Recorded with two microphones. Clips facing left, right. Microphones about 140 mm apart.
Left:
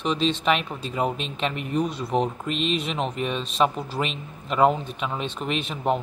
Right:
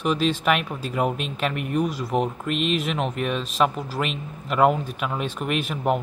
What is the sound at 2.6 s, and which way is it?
Speech, 35° left (ahead or behind).